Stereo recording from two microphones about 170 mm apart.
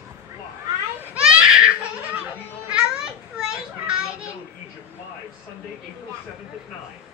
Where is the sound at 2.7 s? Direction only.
5° right (ahead or behind).